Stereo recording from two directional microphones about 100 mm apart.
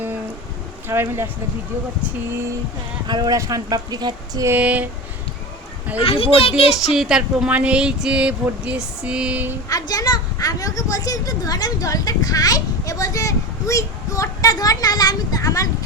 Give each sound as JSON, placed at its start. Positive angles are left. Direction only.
{"t": 0.9, "sound": "speech", "side_deg": -25}
{"t": 3.1, "sound": "speech", "side_deg": -45}
{"t": 3.3, "sound": "speech", "side_deg": -35}
{"t": 4.4, "sound": "speech", "side_deg": -15}
{"t": 6.0, "sound": "speech", "side_deg": 70}
{"t": 6.9, "sound": "speech", "side_deg": -5}
{"t": 9.6, "sound": "a woman's voice", "side_deg": 40}